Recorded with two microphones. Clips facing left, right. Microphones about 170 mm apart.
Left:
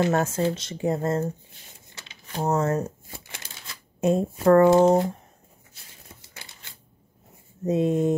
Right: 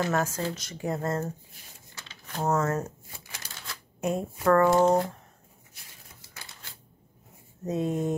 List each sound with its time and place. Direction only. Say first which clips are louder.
0.0 s speech: left 5 dB; 25° left (ahead or behind)
2.0 s a sound: left 2 dB; 15° left (ahead or behind)
4.0 s speech: left 6 dB; 25° left (ahead or behind)
7.6 s speech: left 6 dB; 20° left (ahead or behind)